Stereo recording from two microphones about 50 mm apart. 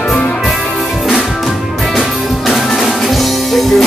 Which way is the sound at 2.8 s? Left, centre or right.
Centre.